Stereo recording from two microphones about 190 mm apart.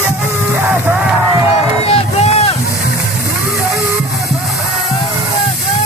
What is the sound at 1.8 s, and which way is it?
Run, 35° left (ahead or behind).